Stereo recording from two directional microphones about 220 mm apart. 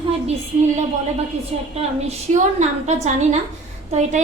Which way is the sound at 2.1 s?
30° right (ahead or behind).